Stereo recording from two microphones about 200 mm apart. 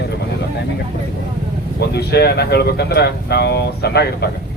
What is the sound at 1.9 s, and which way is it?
Speech, 55° left (ahead or behind).